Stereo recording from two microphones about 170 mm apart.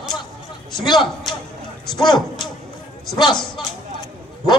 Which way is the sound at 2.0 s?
25° left (ahead or behind).